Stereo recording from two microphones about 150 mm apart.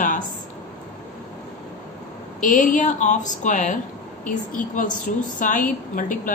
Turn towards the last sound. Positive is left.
turn(degrees=60)  # may be behind; listen again after turning